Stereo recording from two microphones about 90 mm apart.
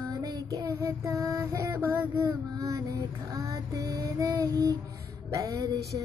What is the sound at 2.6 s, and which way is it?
Female singing, 40° right (ahead or behind).